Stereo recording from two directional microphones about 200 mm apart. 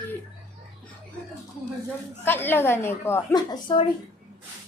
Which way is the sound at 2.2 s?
10° left (ahead or behind).